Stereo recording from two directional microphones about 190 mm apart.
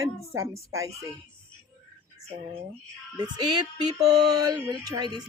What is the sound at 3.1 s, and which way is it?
Music, 20° right (ahead or behind).